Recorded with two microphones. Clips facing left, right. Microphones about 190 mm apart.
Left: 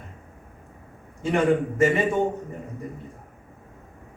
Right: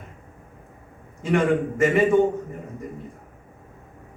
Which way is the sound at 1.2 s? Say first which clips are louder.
Even; 35° left (ahead or behind).